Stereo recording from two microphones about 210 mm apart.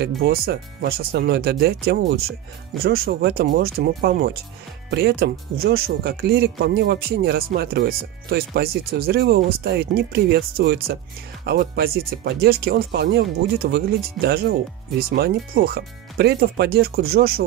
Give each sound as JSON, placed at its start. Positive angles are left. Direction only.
{"t": 0.0, "sound": "speech", "side_deg": -50}